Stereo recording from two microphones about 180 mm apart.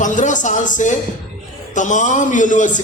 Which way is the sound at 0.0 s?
45° left (ahead or behind).